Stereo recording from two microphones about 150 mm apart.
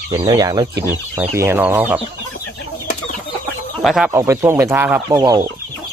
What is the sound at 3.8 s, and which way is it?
Speech, centre (ahead or behind).